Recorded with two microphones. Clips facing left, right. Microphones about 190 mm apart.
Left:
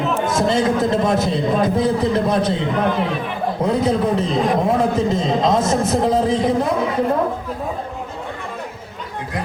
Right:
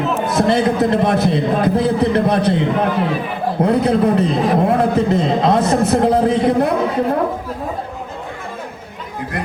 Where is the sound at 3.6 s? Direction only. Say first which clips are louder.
Right 4 dB; 60° right (ahead or behind).